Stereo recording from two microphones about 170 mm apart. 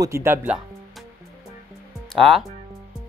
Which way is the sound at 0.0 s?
15° right (ahead or behind).